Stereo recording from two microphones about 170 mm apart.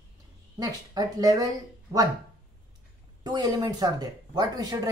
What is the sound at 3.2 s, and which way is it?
Speech, 25° right (ahead or behind).